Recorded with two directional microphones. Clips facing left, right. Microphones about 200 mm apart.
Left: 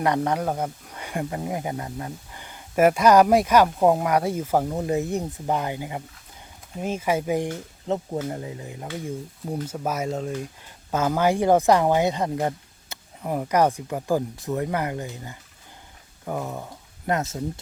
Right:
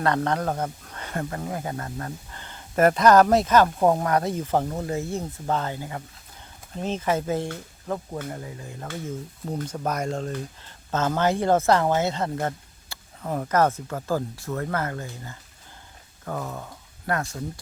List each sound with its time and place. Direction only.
0.0 s speech: 10° left (ahead or behind)
9.6 s speech: 5° left (ahead or behind)